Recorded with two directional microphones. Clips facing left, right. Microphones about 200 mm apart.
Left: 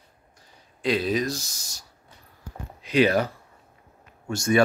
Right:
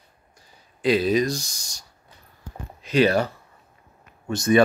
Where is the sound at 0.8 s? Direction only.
Centre (ahead or behind); by 3.3 s 15° left (ahead or behind).